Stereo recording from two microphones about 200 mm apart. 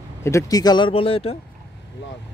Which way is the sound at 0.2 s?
15° left (ahead or behind).